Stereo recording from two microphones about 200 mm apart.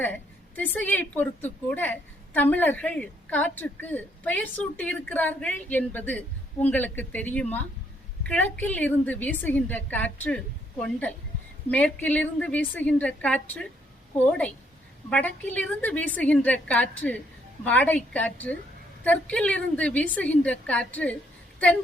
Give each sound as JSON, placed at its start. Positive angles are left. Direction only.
{"t": 0.0, "sound": "a woman's voice", "side_deg": 10}